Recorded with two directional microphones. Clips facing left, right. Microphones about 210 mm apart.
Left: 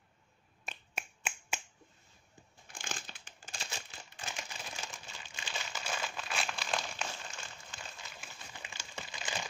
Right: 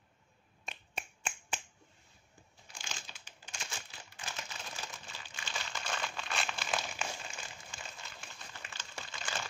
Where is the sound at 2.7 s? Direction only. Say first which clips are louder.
Left 4 dB; 55° left (ahead or behind).